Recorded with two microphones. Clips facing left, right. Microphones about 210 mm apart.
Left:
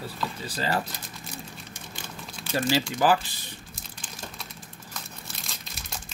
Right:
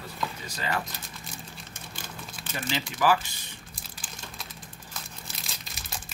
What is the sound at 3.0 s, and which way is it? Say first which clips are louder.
Speech: left 1 dB; 30° left (ahead or behind).